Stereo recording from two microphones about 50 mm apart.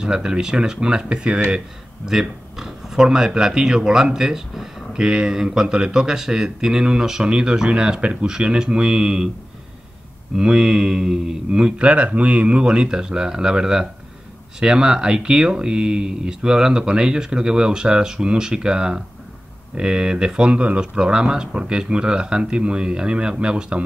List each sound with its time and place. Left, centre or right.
0.0 s speech: centre
2.0 s speech: centre
10.3 s speech: centre
12.6 s speech: centre